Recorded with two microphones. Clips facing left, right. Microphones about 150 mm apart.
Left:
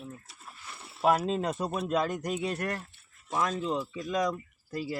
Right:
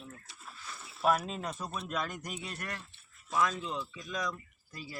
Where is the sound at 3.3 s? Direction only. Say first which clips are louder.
Left 1 dB; 25° left (ahead or behind).